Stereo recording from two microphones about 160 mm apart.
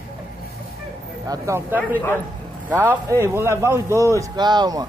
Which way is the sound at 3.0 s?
20° right (ahead or behind).